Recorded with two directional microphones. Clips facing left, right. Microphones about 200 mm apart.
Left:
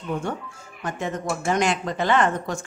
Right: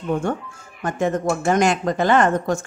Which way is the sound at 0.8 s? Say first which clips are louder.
Right 7 dB; 50° right (ahead or behind).